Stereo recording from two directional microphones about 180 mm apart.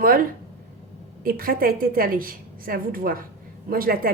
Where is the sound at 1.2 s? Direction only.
55° right (ahead or behind).